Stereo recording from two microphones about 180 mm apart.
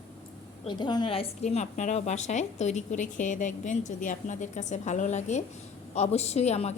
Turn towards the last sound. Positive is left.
turn(degrees=35)  # may be behind; listen again after turning